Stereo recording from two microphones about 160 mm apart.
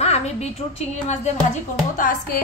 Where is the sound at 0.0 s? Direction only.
40° left (ahead or behind).